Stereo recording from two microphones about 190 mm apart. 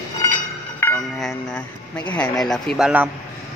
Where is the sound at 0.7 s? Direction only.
10° left (ahead or behind).